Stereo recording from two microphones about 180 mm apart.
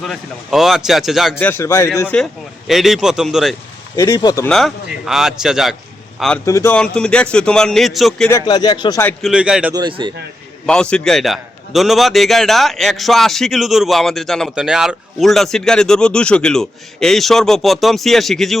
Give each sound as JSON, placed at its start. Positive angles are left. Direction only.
{"t": 0.0, "sound": "a man's voice", "side_deg": 0}
{"t": 1.5, "sound": "speech", "side_deg": 15}
{"t": 2.6, "sound": "a man's voice", "side_deg": 0}
{"t": 3.9, "sound": "speech", "side_deg": 15}
{"t": 4.4, "sound": "a man's voice", "side_deg": 0}
{"t": 6.4, "sound": "speech", "side_deg": 15}
{"t": 6.7, "sound": "a man's voice", "side_deg": 5}
{"t": 8.3, "sound": "speech", "side_deg": 20}
{"t": 9.2, "sound": "a man's voice", "side_deg": -5}
{"t": 9.7, "sound": "speech", "side_deg": -25}
{"t": 10.7, "sound": "a man's voice", "side_deg": 5}